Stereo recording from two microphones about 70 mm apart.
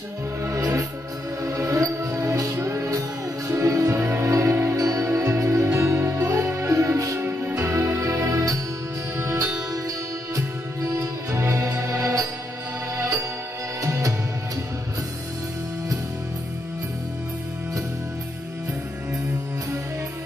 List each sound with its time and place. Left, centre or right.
0.4 s music: right
7.2 s music: right
13.8 s music: right